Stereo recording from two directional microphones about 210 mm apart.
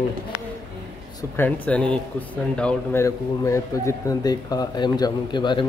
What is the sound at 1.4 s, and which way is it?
Speech, 5° left (ahead or behind).